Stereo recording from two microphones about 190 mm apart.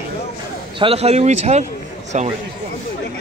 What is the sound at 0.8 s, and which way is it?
Speech, 30° right (ahead or behind).